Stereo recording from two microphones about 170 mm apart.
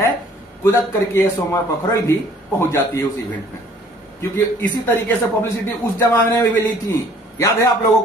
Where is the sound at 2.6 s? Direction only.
15° left (ahead or behind).